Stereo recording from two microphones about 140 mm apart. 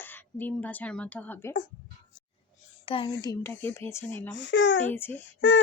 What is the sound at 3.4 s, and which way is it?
A woman's voice, 15° left (ahead or behind).